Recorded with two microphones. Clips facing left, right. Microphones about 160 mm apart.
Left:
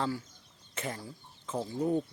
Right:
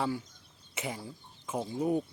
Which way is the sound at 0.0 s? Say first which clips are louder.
Right 1 dB; 15° right (ahead or behind).